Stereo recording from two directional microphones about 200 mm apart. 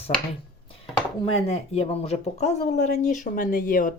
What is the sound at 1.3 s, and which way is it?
Speech, 30° left (ahead or behind).